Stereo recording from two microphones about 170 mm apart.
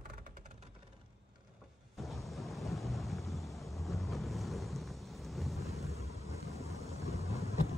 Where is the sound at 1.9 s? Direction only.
Centre (ahead or behind).